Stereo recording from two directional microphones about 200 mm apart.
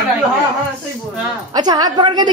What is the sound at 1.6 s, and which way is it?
Speech, 20° right (ahead or behind).